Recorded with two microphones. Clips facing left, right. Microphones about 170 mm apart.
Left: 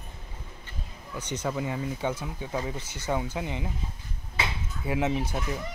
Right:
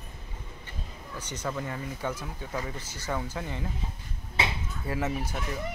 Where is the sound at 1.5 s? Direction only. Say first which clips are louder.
Left 3 dB; 15° left (ahead or behind).